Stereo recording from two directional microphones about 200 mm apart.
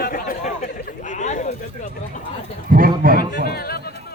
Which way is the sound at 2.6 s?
45° right (ahead or behind).